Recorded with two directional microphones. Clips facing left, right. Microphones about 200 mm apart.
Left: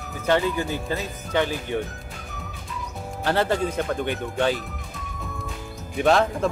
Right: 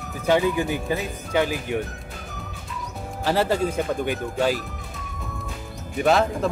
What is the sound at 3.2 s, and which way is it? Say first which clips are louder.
Speech: right 1 dB; 5° right (ahead or behind).